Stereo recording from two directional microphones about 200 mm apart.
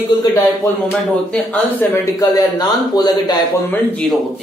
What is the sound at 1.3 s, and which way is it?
Speech, 10° left (ahead or behind).